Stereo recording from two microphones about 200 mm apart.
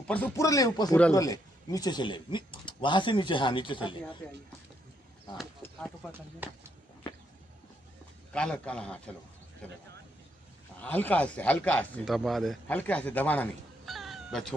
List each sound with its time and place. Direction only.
0.1 s speech: 10° left (ahead or behind)
6.4 s speech: 10° right (ahead or behind)
8.3 s a man's voice: 5° left (ahead or behind)
10.8 s speech: 10° left (ahead or behind)